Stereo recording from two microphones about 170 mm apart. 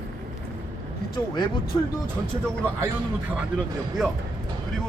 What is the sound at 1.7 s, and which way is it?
Speech, 20° left (ahead or behind).